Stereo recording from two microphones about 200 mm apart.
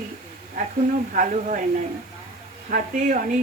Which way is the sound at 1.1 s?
40° right (ahead or behind).